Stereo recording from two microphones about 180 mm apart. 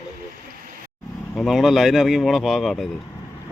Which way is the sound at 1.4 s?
Centre (ahead or behind).